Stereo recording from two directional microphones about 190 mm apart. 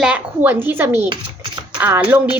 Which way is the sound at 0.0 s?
5° right (ahead or behind).